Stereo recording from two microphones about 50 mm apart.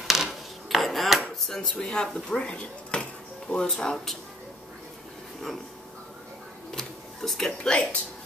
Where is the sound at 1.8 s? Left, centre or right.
Centre.